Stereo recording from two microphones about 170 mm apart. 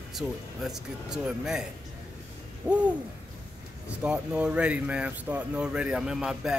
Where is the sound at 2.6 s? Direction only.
10° right (ahead or behind).